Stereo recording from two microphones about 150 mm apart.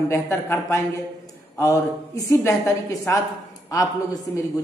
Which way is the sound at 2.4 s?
20° left (ahead or behind).